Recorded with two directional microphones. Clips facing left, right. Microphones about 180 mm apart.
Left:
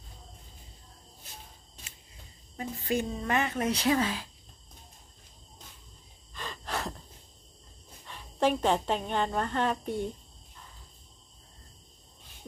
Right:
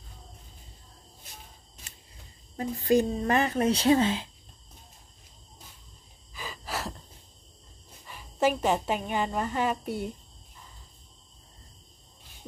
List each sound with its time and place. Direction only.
2.5 s speech: 35° right (ahead or behind)
6.3 s gasp: 5° right (ahead or behind)
8.0 s a woman's voice: 5° right (ahead or behind)